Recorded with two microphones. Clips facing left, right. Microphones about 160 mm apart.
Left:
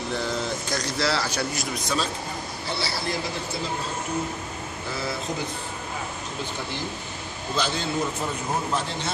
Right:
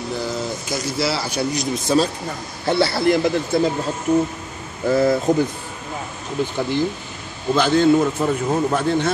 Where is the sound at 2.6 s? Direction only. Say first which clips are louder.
Right 14 dB; 55° right (ahead or behind).